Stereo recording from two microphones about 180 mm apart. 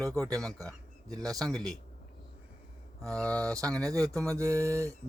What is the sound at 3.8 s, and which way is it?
Speech, 20° right (ahead or behind).